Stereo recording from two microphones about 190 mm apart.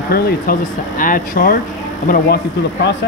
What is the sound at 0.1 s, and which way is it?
Speech, 45° left (ahead or behind).